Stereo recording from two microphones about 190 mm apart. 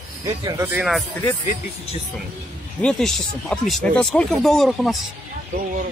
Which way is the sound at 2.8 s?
5° left (ahead or behind).